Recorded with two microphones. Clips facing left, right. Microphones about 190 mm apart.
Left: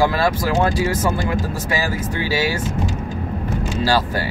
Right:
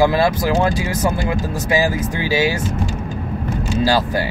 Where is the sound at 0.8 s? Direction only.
15° right (ahead or behind).